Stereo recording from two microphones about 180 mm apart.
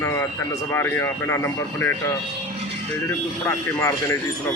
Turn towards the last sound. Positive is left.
turn(degrees=15)  # may be behind; listen again after turning